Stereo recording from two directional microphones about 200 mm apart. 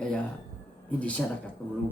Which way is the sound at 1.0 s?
5° left (ahead or behind).